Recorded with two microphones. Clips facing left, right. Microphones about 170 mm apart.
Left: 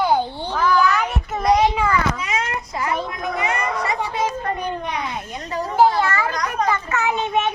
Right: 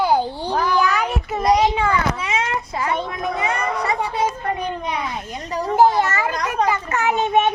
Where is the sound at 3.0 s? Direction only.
30° right (ahead or behind).